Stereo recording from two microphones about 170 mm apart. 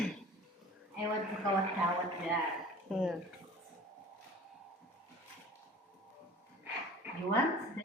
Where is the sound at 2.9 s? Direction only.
Centre (ahead or behind).